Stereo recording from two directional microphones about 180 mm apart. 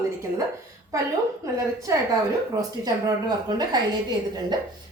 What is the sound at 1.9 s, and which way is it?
A woman's voice, 20° right (ahead or behind).